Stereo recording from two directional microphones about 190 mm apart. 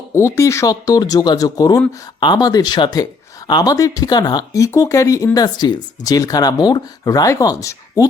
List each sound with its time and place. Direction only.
0.1 s speech: 15° left (ahead or behind)